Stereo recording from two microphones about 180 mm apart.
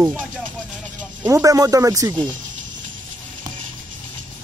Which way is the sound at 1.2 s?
15° right (ahead or behind).